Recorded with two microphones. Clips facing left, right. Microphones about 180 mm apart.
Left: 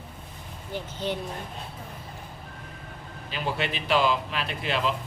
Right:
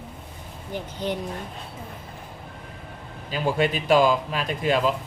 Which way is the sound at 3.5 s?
45° right (ahead or behind).